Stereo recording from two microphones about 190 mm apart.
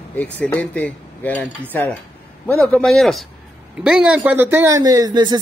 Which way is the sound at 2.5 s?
5° left (ahead or behind).